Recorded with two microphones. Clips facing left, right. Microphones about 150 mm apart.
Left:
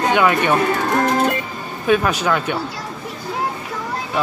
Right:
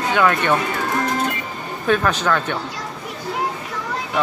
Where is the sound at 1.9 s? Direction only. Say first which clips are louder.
Left 2 dB; 10° left (ahead or behind).